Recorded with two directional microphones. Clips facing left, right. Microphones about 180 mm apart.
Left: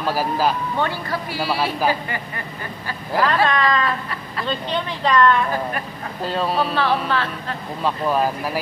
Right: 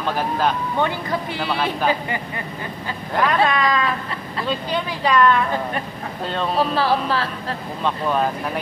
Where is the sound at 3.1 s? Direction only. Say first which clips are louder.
Left 1 dB; 5° left (ahead or behind).